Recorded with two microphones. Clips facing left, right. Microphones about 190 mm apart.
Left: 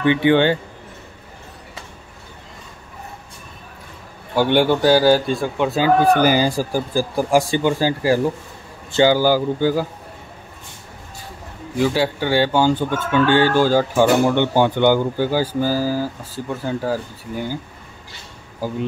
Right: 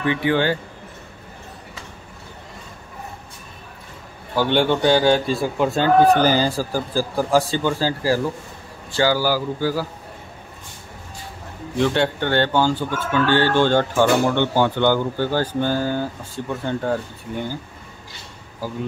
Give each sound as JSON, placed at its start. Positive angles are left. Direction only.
{"t": 0.0, "sound": "speech", "side_deg": 25}
{"t": 4.4, "sound": "a man's voice", "side_deg": 10}
{"t": 6.0, "sound": "speech", "side_deg": 10}
{"t": 11.7, "sound": "speech", "side_deg": 5}